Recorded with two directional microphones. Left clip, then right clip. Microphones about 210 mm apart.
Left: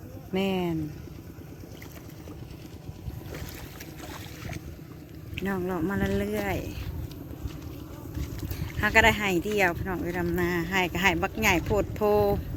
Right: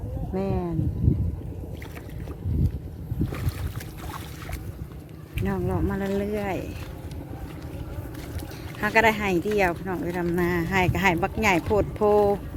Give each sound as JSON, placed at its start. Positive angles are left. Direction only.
{"t": 0.3, "sound": "speech", "side_deg": 30}
{"t": 5.5, "sound": "speech", "side_deg": 5}
{"t": 8.8, "sound": "speech", "side_deg": 0}